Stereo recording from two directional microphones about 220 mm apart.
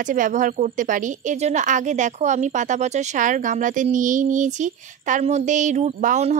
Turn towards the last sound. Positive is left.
turn(degrees=-35)  # may be behind; listen again after turning